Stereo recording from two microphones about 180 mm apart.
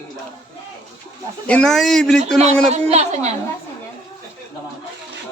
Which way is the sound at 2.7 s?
35° right (ahead or behind).